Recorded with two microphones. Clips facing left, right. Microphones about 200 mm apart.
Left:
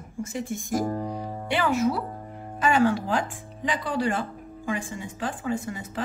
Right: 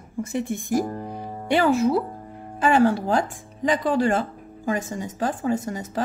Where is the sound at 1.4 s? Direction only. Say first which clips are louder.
Right 5 dB; 40° right (ahead or behind).